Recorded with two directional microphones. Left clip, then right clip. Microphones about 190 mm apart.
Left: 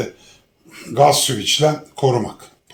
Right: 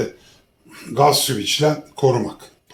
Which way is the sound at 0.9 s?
35° left (ahead or behind).